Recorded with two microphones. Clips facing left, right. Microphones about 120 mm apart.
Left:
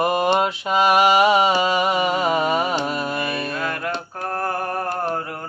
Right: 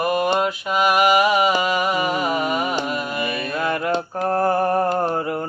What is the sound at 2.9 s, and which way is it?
Music, 30° left (ahead or behind).